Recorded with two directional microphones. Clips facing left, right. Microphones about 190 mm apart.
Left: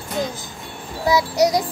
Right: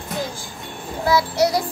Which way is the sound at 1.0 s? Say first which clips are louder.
Left 1 dB; 15° left (ahead or behind).